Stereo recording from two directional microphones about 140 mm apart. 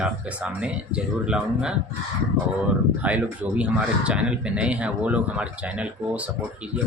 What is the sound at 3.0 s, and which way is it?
Speech, 10° right (ahead or behind).